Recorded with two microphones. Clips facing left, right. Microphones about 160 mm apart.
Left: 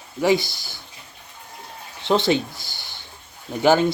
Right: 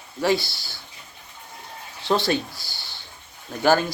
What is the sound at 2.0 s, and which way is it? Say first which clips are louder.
Speech: left 3 dB; 20° left (ahead or behind).